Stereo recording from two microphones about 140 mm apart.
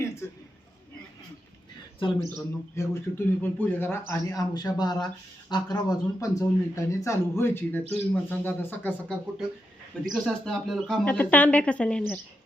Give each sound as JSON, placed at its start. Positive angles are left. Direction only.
{"t": 0.0, "sound": "a sound", "side_deg": 20}
{"t": 2.3, "sound": "speech", "side_deg": 20}
{"t": 11.0, "sound": "speech", "side_deg": 10}